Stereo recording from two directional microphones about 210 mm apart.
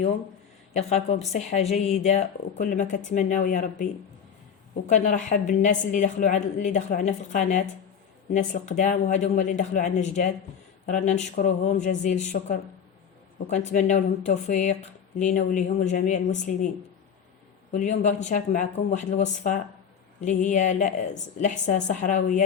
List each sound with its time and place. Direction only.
0.7 s speech: 30° left (ahead or behind)
4.9 s speech: 35° left (ahead or behind)
17.7 s speech: 35° left (ahead or behind)